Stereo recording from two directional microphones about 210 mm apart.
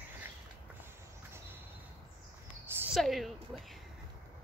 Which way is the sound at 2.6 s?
5° right (ahead or behind).